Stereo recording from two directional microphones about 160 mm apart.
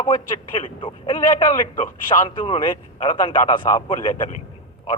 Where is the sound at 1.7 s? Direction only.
45° left (ahead or behind).